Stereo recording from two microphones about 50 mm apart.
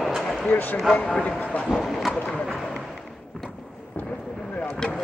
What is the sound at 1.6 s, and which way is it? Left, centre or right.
Speech, centre.